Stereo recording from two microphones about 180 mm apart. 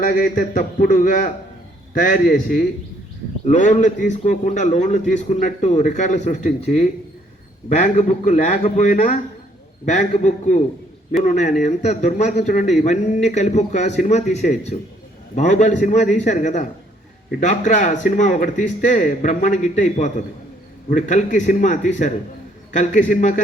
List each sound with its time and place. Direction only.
0.0 s a man's voice: 45° left (ahead or behind)